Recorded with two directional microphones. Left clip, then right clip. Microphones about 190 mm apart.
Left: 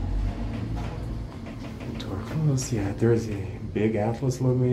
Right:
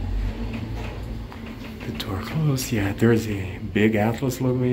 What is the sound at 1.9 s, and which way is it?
Speech, centre (ahead or behind).